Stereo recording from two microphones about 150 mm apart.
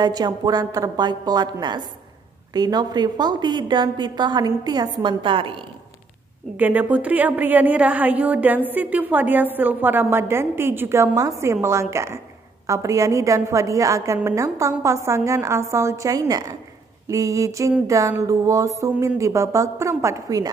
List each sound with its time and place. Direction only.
0.0 s a woman's voice: 25° right (ahead or behind)
6.5 s a woman's voice: 10° right (ahead or behind)